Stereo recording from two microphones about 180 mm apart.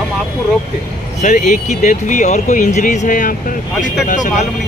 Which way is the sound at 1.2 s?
45° left (ahead or behind).